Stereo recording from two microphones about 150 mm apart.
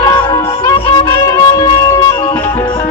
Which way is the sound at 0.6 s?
25° left (ahead or behind).